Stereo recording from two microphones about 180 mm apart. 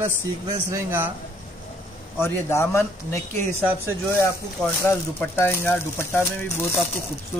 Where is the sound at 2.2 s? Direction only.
15° left (ahead or behind).